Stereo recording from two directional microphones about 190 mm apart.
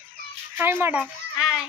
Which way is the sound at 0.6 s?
10° right (ahead or behind).